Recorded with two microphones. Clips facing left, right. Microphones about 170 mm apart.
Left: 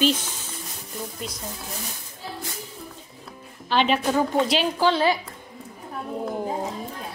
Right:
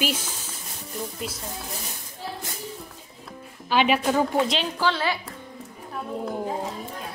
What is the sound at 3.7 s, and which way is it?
Speech, 10° right (ahead or behind).